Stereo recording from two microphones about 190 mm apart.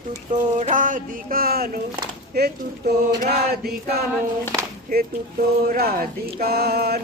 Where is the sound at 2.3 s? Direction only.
55° right (ahead or behind).